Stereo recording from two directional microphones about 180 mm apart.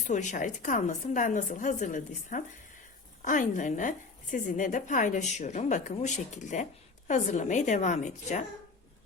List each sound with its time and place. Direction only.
0.0 s a woman's voice: 40° left (ahead or behind)